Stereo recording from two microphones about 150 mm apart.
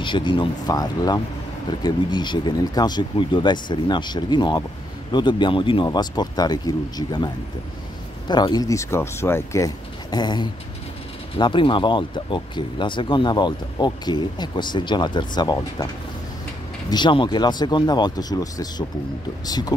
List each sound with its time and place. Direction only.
0.0 s speech: 30° left (ahead or behind)
8.3 s speech: 30° left (ahead or behind)
10.1 s speech: 30° left (ahead or behind)
16.9 s speech: 30° left (ahead or behind)